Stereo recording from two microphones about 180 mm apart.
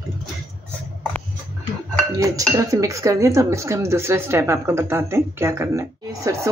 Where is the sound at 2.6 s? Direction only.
20° right (ahead or behind).